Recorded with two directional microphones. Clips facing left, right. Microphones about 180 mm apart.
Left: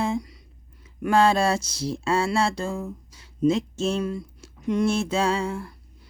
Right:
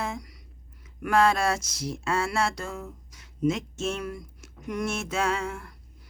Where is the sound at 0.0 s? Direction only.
25° left (ahead or behind).